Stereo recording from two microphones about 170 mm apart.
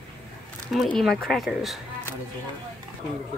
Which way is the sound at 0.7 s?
Centre (ahead or behind).